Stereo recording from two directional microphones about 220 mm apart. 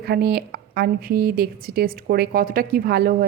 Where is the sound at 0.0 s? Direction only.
45° right (ahead or behind).